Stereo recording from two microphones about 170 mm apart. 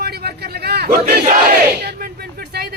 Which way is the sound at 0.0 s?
65° right (ahead or behind).